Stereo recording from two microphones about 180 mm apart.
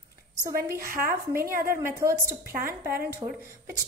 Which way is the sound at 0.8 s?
50° right (ahead or behind).